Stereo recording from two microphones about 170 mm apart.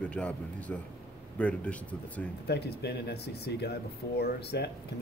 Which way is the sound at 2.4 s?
75° left (ahead or behind).